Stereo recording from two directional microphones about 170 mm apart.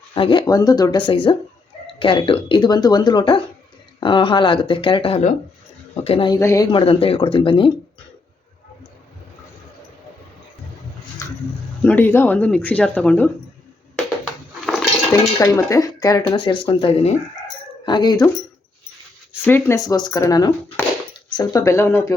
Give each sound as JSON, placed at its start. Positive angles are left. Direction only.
{"t": 0.1, "sound": "speech", "side_deg": 30}
{"t": 6.7, "sound": "speech", "side_deg": 30}
{"t": 11.8, "sound": "speech", "side_deg": 10}
{"t": 14.6, "sound": "cutlery", "side_deg": 0}
{"t": 15.1, "sound": "speech", "side_deg": 15}
{"t": 19.5, "sound": "speech", "side_deg": 15}